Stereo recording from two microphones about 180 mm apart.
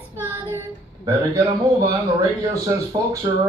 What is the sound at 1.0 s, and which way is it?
A man's voice, 20° right (ahead or behind).